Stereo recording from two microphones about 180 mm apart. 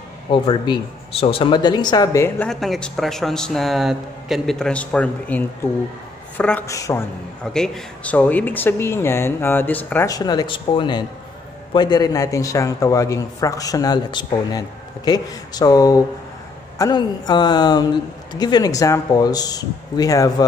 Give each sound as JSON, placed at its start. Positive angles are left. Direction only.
{"t": 0.3, "sound": "speech", "side_deg": 30}
{"t": 7.5, "sound": "a man's voice", "side_deg": 5}